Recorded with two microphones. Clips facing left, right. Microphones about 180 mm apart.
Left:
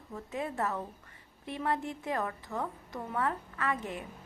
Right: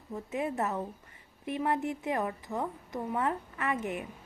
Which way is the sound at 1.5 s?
15° right (ahead or behind).